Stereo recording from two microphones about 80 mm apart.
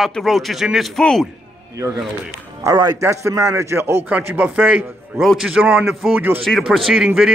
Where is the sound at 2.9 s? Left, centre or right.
Right.